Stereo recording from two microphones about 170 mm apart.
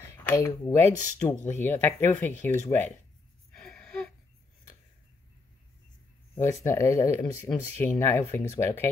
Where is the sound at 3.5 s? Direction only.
5° left (ahead or behind).